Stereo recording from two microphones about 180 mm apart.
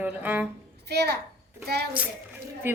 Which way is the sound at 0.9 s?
65° right (ahead or behind).